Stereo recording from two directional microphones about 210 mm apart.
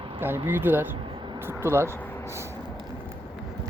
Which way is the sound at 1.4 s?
10° right (ahead or behind).